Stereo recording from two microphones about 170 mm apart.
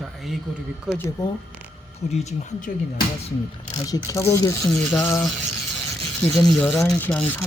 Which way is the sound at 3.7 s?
20° left (ahead or behind).